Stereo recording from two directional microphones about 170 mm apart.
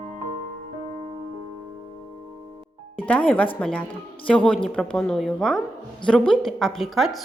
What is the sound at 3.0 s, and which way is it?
Speech, 10° left (ahead or behind).